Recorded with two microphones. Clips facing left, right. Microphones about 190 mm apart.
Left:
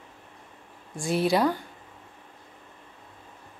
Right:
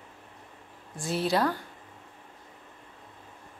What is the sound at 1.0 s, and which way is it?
Speech, 15° left (ahead or behind).